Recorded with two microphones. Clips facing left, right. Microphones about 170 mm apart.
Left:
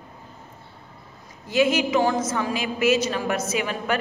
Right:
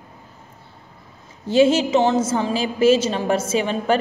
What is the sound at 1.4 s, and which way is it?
A woman's voice, 30° right (ahead or behind).